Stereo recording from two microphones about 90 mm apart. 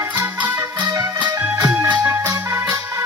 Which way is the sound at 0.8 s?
50° right (ahead or behind).